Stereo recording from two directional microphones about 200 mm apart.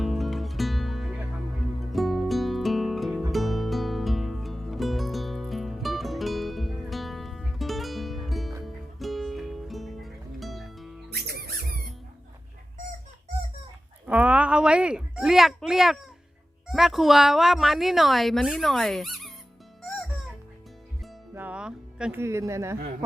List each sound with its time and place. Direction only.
0.0 s music: centre (ahead or behind)
11.1 s music: 50° right (ahead or behind)
14.1 s a sound: 5° right (ahead or behind)
16.6 s speech: centre (ahead or behind)
19.8 s music: centre (ahead or behind)